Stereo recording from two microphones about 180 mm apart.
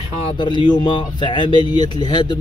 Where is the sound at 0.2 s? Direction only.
25° left (ahead or behind).